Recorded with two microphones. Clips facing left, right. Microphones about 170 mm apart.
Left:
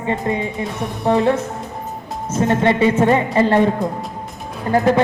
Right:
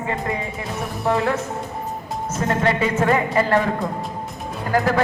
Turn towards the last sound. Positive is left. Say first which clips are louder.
# left 4 dB
turn(degrees=25)  # may be behind; listen again after turning